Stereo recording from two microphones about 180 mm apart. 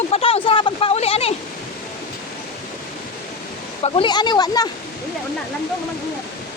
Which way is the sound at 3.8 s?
30° left (ahead or behind).